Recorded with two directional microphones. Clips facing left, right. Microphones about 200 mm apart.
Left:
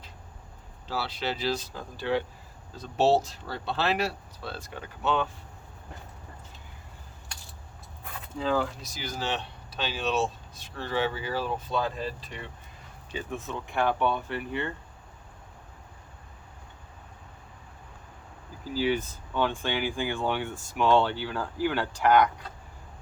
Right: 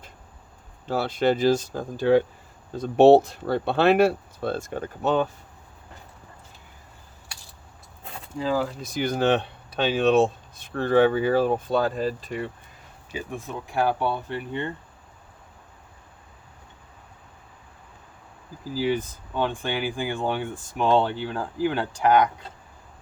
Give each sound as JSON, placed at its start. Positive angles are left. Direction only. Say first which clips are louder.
{"t": 0.9, "sound": "speech", "louder": "right 10 dB", "side_deg": -50}
{"t": 8.4, "sound": "speech", "louder": "right 2 dB", "side_deg": -5}
{"t": 8.8, "sound": "speech", "louder": "right 11 dB", "side_deg": -55}
{"t": 13.1, "sound": "speech", "louder": "right 2 dB", "side_deg": -10}
{"t": 19.3, "sound": "speech", "louder": "right 2 dB", "side_deg": -15}